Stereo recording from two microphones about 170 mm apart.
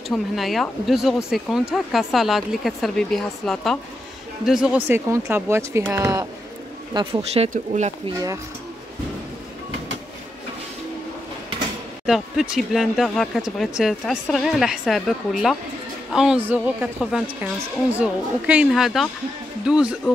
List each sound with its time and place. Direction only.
0.1 s speech: centre (ahead or behind); by 6.2 s 15° right (ahead or behind)
6.9 s speech: 25° right (ahead or behind)
7.4 s speech: 45° right (ahead or behind)
12.1 s speech: 5° right (ahead or behind)